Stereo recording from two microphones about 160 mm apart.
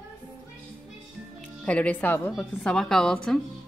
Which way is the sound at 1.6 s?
10° left (ahead or behind).